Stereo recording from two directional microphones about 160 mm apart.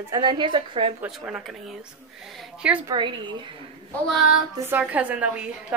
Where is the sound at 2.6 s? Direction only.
5° right (ahead or behind).